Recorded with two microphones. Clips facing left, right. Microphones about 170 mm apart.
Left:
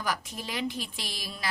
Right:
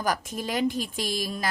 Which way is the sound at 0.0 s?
45° right (ahead or behind).